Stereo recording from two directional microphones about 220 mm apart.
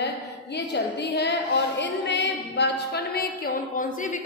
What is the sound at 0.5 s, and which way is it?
A woman's voice, 50° left (ahead or behind).